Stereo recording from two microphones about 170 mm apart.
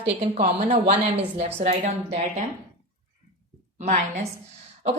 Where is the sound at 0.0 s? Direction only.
40° right (ahead or behind).